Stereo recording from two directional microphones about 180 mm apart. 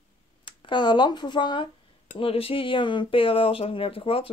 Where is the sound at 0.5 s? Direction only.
25° left (ahead or behind).